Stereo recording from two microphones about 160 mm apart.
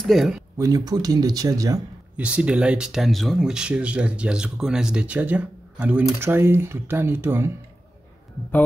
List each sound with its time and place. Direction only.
0.0 s speech: centre (ahead or behind)
0.6 s speech: 20° right (ahead or behind)
2.1 s speech: 5° right (ahead or behind)